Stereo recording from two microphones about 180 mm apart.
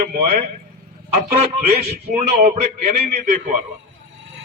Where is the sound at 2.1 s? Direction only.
40° right (ahead or behind).